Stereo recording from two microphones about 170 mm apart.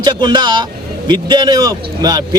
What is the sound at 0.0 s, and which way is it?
Speech, 25° right (ahead or behind).